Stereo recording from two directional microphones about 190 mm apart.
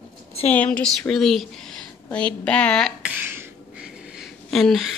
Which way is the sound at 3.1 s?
10° right (ahead or behind).